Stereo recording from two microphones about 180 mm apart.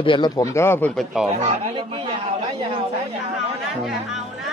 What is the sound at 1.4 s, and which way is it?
Speech, 35° right (ahead or behind).